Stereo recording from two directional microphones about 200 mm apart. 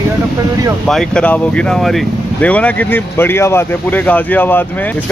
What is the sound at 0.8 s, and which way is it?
Speech, 5° left (ahead or behind).